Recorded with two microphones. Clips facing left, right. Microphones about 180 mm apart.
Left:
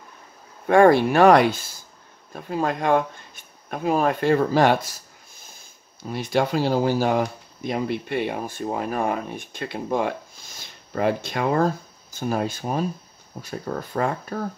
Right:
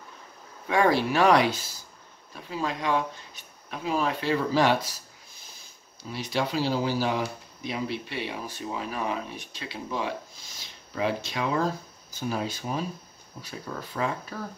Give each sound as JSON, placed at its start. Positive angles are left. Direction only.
{"t": 0.7, "sound": "speech", "side_deg": 55}